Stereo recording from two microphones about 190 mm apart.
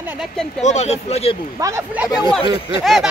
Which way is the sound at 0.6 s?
35° left (ahead or behind).